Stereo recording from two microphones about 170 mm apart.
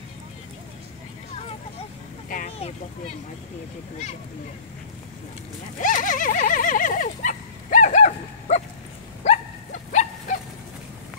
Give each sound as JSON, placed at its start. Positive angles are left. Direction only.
{"t": 2.2, "sound": "vehicle", "side_deg": 50}
{"t": 5.8, "sound": "a sound", "side_deg": 50}
{"t": 9.2, "sound": "dog", "side_deg": 45}